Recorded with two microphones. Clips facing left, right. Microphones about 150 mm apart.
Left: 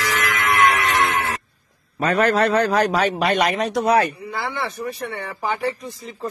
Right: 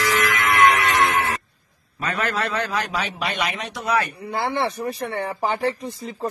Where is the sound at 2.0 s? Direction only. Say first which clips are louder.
Left 8 dB; 45° left (ahead or behind).